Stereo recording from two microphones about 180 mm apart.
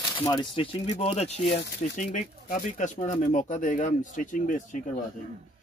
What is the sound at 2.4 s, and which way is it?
A man's voice, 50° left (ahead or behind).